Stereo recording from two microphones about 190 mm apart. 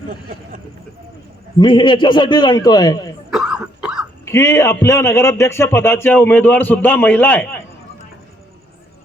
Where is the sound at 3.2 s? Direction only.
Centre (ahead or behind).